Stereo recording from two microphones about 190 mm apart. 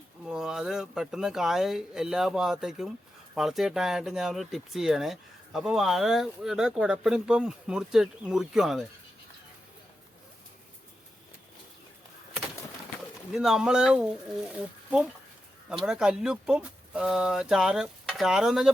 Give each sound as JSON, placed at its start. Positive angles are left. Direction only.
{"t": 0.3, "sound": "speech", "side_deg": -5}
{"t": 13.3, "sound": "speech", "side_deg": 0}